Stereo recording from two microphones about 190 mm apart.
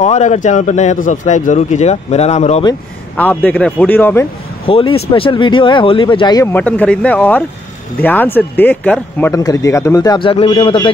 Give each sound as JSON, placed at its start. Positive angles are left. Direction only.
{"t": 0.0, "sound": "a man's voice", "side_deg": 35}
{"t": 3.2, "sound": "speech", "side_deg": 10}
{"t": 4.6, "sound": "speech", "side_deg": 30}
{"t": 6.5, "sound": "speech", "side_deg": 10}